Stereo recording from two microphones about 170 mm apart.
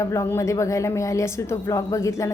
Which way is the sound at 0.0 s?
15° left (ahead or behind).